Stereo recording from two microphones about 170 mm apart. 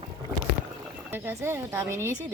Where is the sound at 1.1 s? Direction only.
15° right (ahead or behind).